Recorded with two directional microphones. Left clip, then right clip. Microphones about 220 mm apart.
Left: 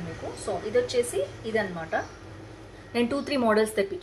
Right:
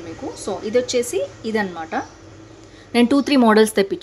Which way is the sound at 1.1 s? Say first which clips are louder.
Right 5 dB; 50° right (ahead or behind).